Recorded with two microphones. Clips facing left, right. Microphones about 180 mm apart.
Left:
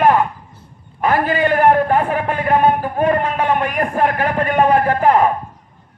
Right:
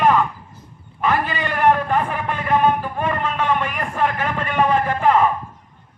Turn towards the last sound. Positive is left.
turn(degrees=40)  # may be behind; listen again after turning